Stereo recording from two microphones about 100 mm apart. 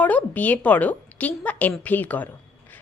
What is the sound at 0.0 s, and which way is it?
A woman's voice, 15° left (ahead or behind).